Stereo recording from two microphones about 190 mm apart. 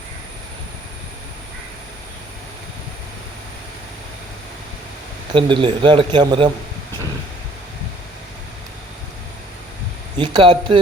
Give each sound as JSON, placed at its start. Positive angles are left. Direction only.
{"t": 5.3, "sound": "a man's voice", "side_deg": -25}
{"t": 10.2, "sound": "a man's voice", "side_deg": -25}